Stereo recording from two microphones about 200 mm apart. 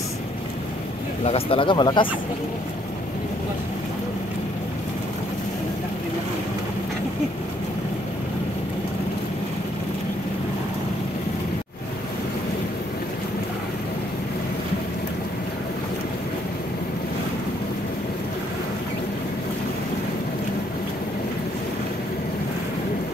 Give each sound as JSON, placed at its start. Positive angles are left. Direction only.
{"t": 1.2, "sound": "speech", "side_deg": 30}